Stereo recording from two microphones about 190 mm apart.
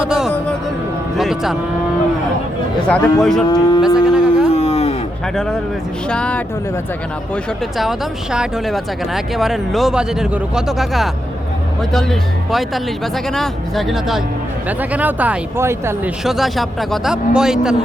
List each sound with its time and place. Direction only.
0.0 s speech: 5° right (ahead or behind)
1.1 s vehicle: centre (ahead or behind)
2.8 s speech: 5° left (ahead or behind)
3.5 s speech: 20° left (ahead or behind)
3.8 s a sound: 5° right (ahead or behind)
4.5 s a sound: 35° left (ahead or behind)
6.1 s speech: 5° left (ahead or behind)
7.8 s speech: centre (ahead or behind)
16.2 s speech: centre (ahead or behind)